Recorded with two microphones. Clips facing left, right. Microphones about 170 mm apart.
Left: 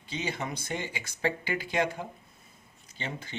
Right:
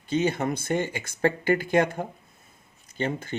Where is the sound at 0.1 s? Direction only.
50° right (ahead or behind).